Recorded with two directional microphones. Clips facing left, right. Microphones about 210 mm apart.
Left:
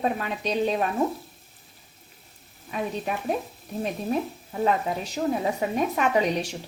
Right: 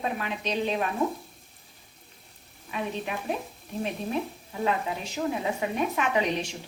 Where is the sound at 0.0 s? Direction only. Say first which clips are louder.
Left 4 dB; 40° left (ahead or behind).